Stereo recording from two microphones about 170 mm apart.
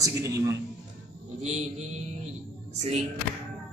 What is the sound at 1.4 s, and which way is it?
Mantra, 40° right (ahead or behind).